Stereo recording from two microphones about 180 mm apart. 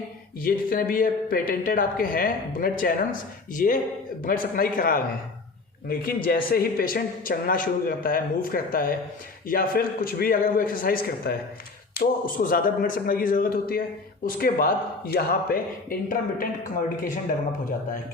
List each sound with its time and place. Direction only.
0.4 s speech: 55° left (ahead or behind)